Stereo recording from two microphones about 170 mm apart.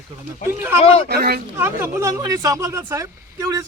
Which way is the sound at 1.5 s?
15° right (ahead or behind).